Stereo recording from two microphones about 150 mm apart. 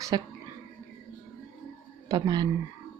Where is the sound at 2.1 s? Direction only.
25° right (ahead or behind).